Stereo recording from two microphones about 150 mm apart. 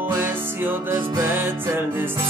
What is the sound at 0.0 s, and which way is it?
Music, 15° right (ahead or behind).